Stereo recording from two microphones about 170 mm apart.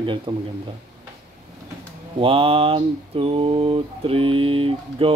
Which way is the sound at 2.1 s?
35° right (ahead or behind).